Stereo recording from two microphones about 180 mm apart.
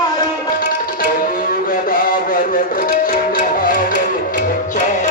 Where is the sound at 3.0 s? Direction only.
50° left (ahead or behind).